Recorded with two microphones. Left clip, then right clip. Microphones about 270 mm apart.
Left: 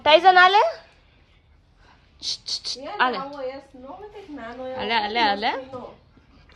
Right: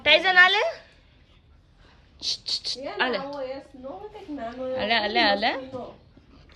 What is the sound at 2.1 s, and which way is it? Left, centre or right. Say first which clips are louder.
A child's voice: even; centre.